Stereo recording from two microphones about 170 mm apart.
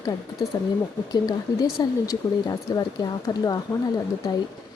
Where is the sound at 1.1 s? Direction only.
25° left (ahead or behind).